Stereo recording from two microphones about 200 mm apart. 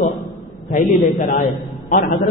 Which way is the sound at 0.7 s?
40° left (ahead or behind).